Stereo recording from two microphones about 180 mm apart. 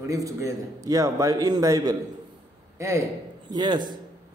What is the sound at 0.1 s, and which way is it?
A man's voice, 20° right (ahead or behind).